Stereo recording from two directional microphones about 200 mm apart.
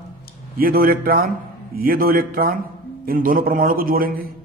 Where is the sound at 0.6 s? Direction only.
45° right (ahead or behind).